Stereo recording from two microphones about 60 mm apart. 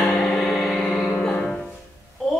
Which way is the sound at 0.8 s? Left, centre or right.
Centre.